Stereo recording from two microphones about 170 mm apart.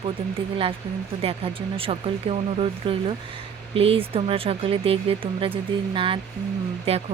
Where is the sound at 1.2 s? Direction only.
35° right (ahead or behind).